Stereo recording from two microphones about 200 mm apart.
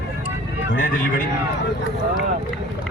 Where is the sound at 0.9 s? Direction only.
45° left (ahead or behind).